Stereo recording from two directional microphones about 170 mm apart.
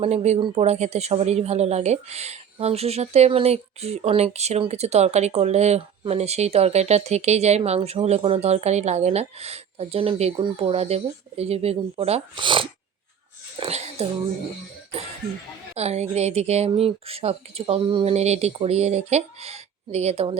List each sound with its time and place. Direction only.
0.0 s speech: 40° right (ahead or behind)
15.7 s speech: 40° right (ahead or behind)